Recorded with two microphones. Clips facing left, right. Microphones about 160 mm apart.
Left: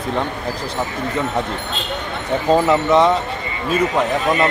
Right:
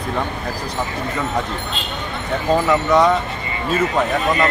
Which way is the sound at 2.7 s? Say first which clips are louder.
Right 1 dB; 25° left (ahead or behind).